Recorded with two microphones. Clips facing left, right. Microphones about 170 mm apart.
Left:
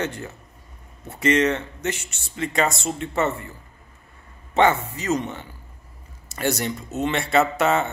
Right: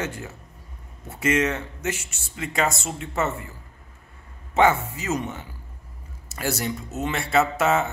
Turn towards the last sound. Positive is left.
turn(degrees=-5)  # may be behind; listen again after turning